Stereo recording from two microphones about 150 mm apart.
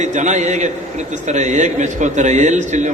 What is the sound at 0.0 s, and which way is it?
A man's voice, 50° right (ahead or behind).